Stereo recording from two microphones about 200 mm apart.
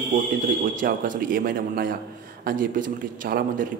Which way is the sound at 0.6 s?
40° right (ahead or behind).